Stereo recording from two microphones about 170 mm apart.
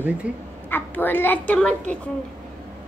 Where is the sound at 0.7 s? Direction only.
10° left (ahead or behind).